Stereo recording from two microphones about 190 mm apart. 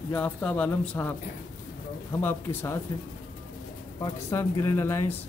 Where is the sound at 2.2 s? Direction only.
10° left (ahead or behind).